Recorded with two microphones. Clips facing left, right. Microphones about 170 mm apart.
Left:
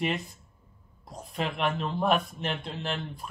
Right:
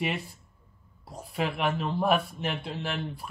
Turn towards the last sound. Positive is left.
turn(degrees=-10)  # may be behind; listen again after turning